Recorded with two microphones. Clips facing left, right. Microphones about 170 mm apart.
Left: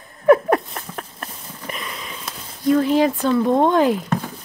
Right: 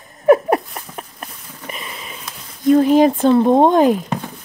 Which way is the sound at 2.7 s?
25° right (ahead or behind).